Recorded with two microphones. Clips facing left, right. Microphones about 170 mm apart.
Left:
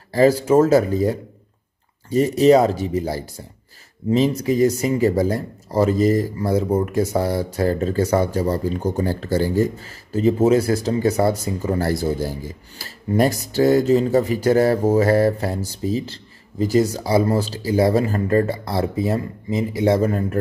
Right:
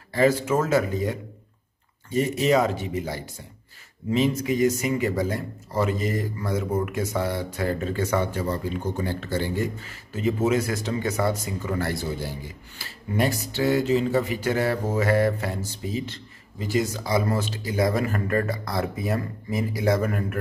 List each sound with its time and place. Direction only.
0.1 s speech: 35° left (ahead or behind)